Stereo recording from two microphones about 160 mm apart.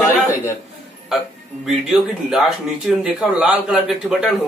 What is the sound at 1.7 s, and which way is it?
Speech, centre (ahead or behind).